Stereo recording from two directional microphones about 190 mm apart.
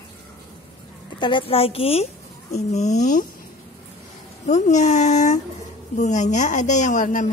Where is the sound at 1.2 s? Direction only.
25° left (ahead or behind).